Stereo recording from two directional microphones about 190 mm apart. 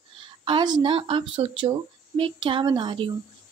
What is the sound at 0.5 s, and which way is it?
Speech, 25° right (ahead or behind).